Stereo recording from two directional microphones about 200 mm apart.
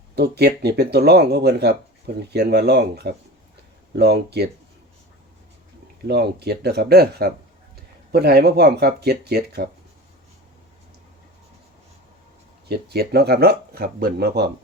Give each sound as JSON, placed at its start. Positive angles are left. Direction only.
{"t": 0.2, "sound": "speech", "side_deg": -55}
{"t": 6.1, "sound": "speech", "side_deg": -55}
{"t": 12.6, "sound": "speech", "side_deg": -55}